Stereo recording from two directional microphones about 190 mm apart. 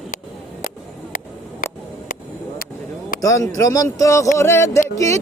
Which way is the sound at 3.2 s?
15° left (ahead or behind).